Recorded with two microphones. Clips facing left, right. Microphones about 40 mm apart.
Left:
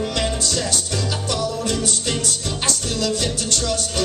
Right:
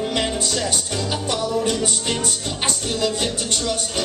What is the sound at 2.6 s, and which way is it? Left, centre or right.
Music, right.